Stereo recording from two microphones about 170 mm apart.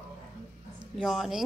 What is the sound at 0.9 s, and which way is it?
Speech, centre (ahead or behind).